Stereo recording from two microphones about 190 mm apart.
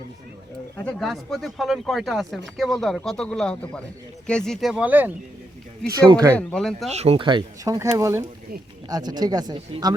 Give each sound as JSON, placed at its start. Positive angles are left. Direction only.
{"t": 0.9, "sound": "speech", "side_deg": 0}
{"t": 5.9, "sound": "speech", "side_deg": -20}
{"t": 6.3, "sound": "speech", "side_deg": 5}
{"t": 6.9, "sound": "speech", "side_deg": -35}